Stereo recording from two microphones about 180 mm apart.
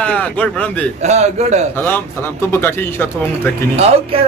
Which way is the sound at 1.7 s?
10° left (ahead or behind).